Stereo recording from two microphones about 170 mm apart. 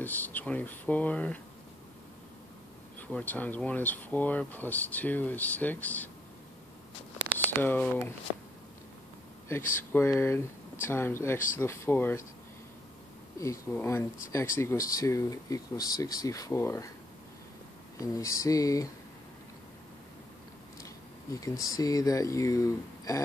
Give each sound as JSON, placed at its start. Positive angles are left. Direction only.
{"t": 0.0, "sound": "speech", "side_deg": 10}
{"t": 3.0, "sound": "speech", "side_deg": 10}
{"t": 7.6, "sound": "speech", "side_deg": 10}
{"t": 9.5, "sound": "speech", "side_deg": 15}
{"t": 13.4, "sound": "speech", "side_deg": 15}
{"t": 17.9, "sound": "speech", "side_deg": 20}
{"t": 21.4, "sound": "speech", "side_deg": 20}